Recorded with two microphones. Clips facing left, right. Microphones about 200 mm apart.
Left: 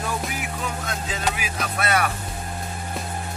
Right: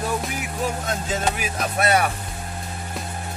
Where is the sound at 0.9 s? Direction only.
45° right (ahead or behind).